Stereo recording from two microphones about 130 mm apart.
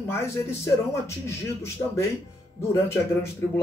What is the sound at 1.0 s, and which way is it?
Speech, 20° left (ahead or behind).